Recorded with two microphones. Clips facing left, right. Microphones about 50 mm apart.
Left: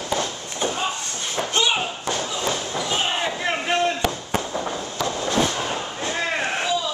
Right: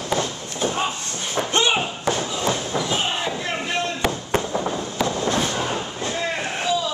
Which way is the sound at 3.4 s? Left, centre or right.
Left.